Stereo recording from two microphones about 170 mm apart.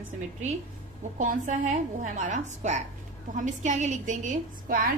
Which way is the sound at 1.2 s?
50° right (ahead or behind).